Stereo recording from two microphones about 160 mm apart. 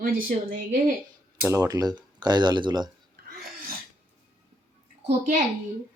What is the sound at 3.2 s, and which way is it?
Sneeze, 75° right (ahead or behind).